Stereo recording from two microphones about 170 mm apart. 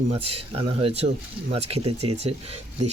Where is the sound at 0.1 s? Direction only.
35° right (ahead or behind).